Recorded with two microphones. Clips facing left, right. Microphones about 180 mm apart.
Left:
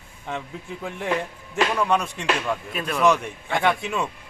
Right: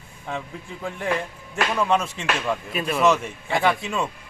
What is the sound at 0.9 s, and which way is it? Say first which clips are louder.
Speech: even; centre (ahead or behind).